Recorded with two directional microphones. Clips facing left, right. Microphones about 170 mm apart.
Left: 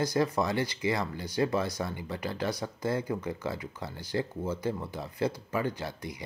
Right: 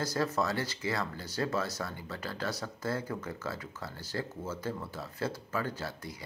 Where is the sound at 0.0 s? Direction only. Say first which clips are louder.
Left 4 dB; 15° left (ahead or behind).